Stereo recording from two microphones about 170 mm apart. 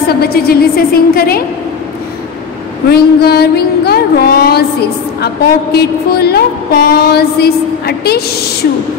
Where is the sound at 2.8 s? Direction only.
70° left (ahead or behind).